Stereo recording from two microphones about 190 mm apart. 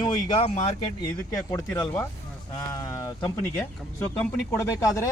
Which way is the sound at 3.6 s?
10° left (ahead or behind).